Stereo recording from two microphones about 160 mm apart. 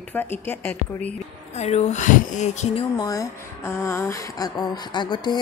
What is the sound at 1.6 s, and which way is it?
Speech, 45° left (ahead or behind).